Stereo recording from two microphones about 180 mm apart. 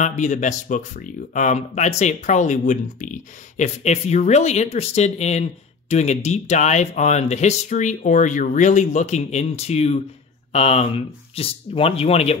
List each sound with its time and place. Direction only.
0.0 s speech: 40° left (ahead or behind)